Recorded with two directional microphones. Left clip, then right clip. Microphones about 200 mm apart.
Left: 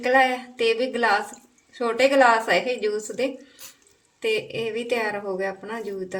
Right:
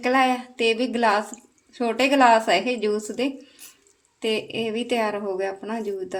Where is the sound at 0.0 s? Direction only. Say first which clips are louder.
Left 1 dB; 40° right (ahead or behind).